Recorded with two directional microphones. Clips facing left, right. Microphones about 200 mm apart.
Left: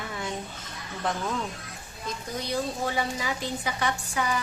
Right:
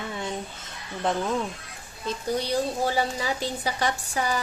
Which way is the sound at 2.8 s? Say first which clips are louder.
Right 3 dB; 35° right (ahead or behind).